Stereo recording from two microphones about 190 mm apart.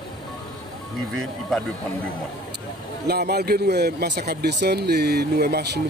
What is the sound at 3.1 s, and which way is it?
Speech, 55° right (ahead or behind).